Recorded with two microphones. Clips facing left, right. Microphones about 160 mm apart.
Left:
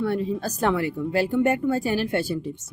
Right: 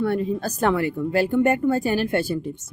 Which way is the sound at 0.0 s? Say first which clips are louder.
Right 2 dB; 50° right (ahead or behind).